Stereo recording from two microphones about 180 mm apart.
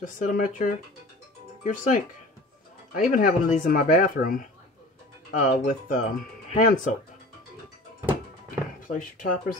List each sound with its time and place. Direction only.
0.0 s speech: 45° left (ahead or behind)
8.8 s speech: 50° left (ahead or behind)